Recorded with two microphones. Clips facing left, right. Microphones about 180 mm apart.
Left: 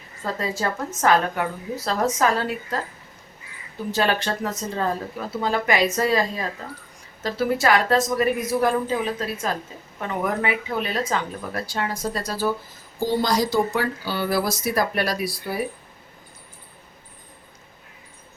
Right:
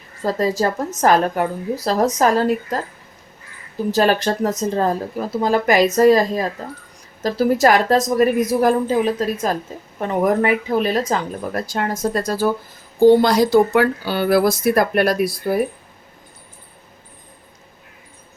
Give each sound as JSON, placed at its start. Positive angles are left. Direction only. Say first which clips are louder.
{"t": 0.2, "sound": "a woman's voice", "louder": "right 8 dB", "side_deg": -40}
{"t": 3.9, "sound": "a woman's voice", "louder": "right 6 dB", "side_deg": -40}
{"t": 13.1, "sound": "speech", "louder": "right 10 dB", "side_deg": -60}